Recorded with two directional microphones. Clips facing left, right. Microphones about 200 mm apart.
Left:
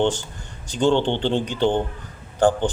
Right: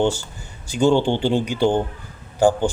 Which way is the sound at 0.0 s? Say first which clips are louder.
Right 1 dB; 10° right (ahead or behind).